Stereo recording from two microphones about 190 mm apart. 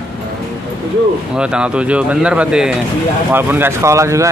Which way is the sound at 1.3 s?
5° right (ahead or behind).